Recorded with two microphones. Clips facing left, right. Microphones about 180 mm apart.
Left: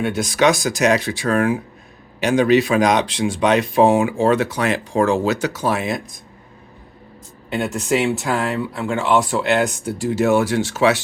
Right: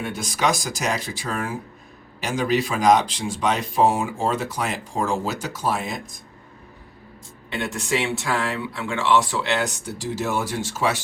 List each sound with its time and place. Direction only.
0.0 s speech: 70° left (ahead or behind)
7.5 s speech: 40° left (ahead or behind); by 11.0 s 70° left (ahead or behind)